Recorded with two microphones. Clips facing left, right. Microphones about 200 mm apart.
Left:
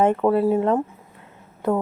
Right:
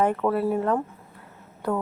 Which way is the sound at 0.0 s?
25° left (ahead or behind).